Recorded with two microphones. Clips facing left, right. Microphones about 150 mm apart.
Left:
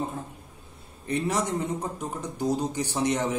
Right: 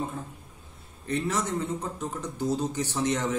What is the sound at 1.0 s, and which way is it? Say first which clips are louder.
A man's voice: left 2 dB; 10° left (ahead or behind).